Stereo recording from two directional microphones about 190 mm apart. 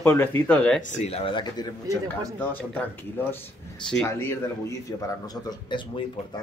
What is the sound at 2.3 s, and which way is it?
A man's voice, 10° left (ahead or behind).